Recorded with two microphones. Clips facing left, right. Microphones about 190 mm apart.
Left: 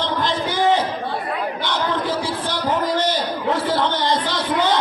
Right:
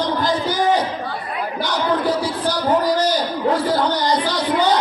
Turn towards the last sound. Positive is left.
turn(degrees=25)  # may be behind; listen again after turning